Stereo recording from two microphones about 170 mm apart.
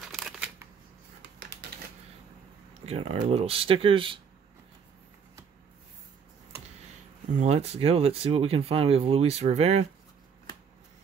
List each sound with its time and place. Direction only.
0.0 s shuffling cards: centre (ahead or behind)
1.7 s typewriter: 65° right (ahead or behind)
2.8 s speech: 35° right (ahead or behind)
7.3 s speech: 40° right (ahead or behind)